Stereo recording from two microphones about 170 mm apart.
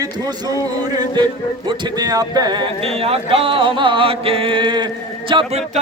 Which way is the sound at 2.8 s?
35° right (ahead or behind).